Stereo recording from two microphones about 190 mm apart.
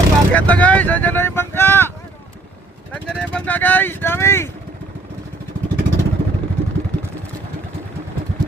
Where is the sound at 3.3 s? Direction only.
10° left (ahead or behind).